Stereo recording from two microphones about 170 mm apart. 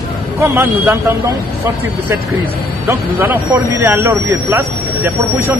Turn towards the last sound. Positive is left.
turn(degrees=-10)  # may be behind; listen again after turning